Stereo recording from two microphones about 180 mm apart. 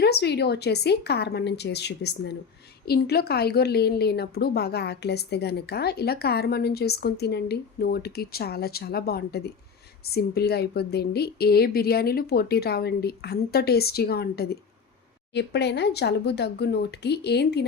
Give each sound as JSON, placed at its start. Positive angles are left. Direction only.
{"t": 0.0, "sound": "a woman's voice", "side_deg": 65}